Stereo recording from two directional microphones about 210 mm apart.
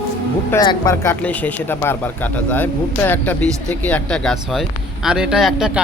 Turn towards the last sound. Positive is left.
turn(degrees=-5)  # may be behind; listen again after turning